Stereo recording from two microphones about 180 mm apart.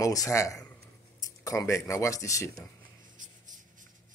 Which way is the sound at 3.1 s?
45° right (ahead or behind).